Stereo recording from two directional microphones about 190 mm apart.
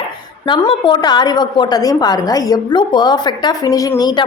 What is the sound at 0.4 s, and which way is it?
A woman's voice, 25° left (ahead or behind).